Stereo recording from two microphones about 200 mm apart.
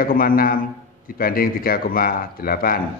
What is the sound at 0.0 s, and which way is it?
A man's voice, 45° left (ahead or behind).